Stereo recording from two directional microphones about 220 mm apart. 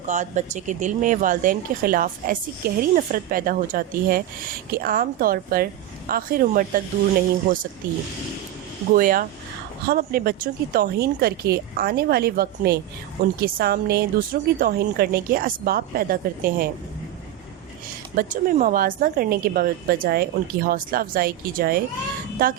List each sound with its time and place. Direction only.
0.0 s speech: 35° right (ahead or behind)
8.9 s a woman's voice: 40° right (ahead or behind)
18.2 s speech: 40° right (ahead or behind)